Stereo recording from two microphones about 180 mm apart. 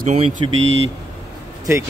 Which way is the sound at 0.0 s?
40° right (ahead or behind).